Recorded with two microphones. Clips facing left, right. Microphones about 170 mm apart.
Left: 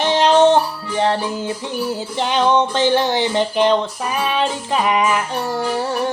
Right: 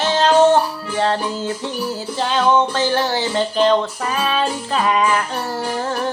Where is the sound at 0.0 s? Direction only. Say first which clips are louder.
Left 1 dB; 20° left (ahead or behind).